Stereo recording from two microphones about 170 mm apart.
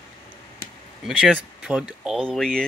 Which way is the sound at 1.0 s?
Centre (ahead or behind).